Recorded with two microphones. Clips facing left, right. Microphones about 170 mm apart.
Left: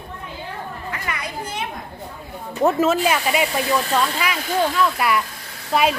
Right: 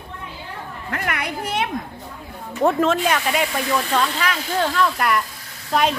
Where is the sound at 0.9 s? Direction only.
65° right (ahead or behind).